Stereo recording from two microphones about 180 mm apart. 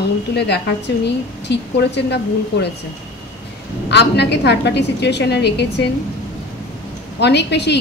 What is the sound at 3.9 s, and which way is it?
A woman's voice, 70° left (ahead or behind).